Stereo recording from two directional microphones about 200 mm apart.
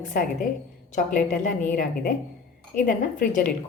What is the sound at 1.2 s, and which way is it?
Speech, 5° left (ahead or behind).